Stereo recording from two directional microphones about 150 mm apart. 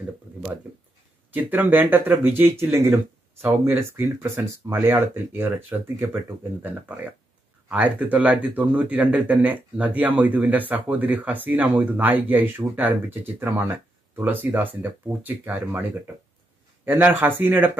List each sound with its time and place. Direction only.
1.3 s speech: 10° right (ahead or behind)